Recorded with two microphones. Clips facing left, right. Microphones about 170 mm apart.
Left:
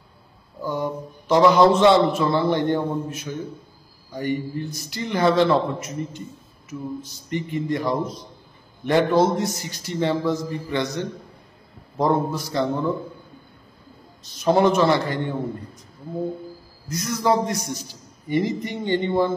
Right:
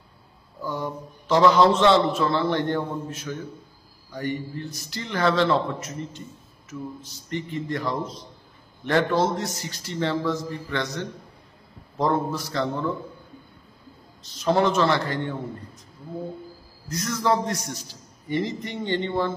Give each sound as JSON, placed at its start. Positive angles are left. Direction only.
{"t": 0.6, "sound": "a man's voice", "side_deg": 15}
{"t": 14.4, "sound": "a man's voice", "side_deg": 15}
{"t": 17.0, "sound": "a man's voice", "side_deg": 15}